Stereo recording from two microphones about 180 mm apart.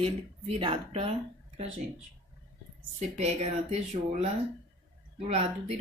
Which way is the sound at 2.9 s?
35° right (ahead or behind).